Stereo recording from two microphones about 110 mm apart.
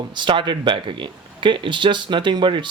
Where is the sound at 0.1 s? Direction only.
45° right (ahead or behind).